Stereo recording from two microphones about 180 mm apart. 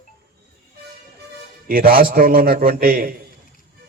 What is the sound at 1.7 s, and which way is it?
A man's voice, 50° right (ahead or behind).